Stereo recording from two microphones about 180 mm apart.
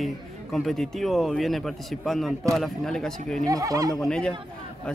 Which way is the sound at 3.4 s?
20° right (ahead or behind).